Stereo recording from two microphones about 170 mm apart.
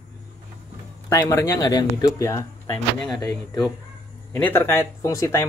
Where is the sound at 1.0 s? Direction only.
20° left (ahead or behind).